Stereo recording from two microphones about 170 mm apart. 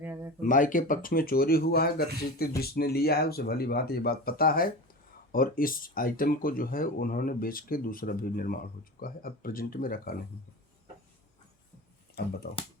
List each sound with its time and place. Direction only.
0.0 s a sound: 10° right (ahead or behind)
0.4 s speech: 50° left (ahead or behind)
12.2 s speech: 70° left (ahead or behind)